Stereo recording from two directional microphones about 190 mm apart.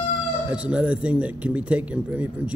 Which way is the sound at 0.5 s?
5° right (ahead or behind).